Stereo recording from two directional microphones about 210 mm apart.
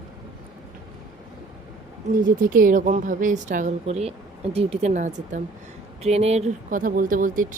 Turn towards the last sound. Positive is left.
turn(degrees=-40)  # may be behind; listen again after turning